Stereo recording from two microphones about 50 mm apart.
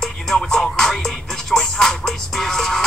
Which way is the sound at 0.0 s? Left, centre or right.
Centre.